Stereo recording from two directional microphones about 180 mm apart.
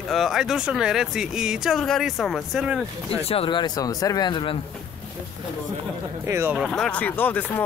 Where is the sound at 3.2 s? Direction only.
30° left (ahead or behind).